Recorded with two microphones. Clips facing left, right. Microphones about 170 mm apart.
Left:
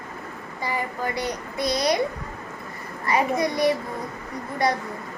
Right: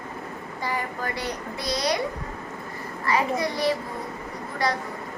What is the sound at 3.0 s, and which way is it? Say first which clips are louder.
Speech: left 2 dB; 20° left (ahead or behind).